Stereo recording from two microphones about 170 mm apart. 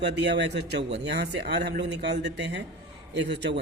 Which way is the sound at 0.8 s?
40° right (ahead or behind).